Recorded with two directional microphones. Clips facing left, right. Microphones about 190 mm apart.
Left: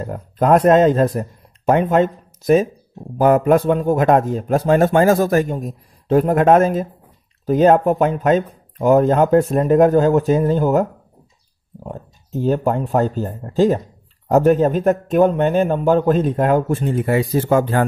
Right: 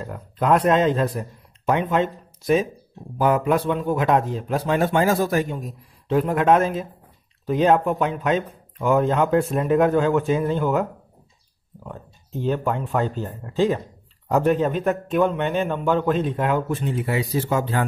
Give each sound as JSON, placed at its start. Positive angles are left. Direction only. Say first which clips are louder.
{"t": 0.0, "sound": "a man's voice", "louder": "left 6 dB", "side_deg": 45}